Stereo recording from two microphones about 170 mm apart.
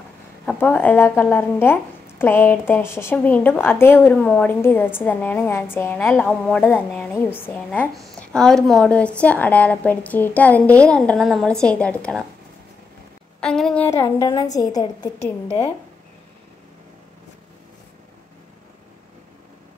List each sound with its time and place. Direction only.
0.5 s speech: 10° left (ahead or behind)
13.4 s speech: 5° left (ahead or behind)
14.1 s a woman's voice: 25° left (ahead or behind)
15.4 s speech: 35° left (ahead or behind)